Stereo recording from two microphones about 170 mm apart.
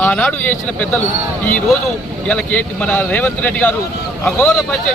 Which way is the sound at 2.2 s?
5° left (ahead or behind).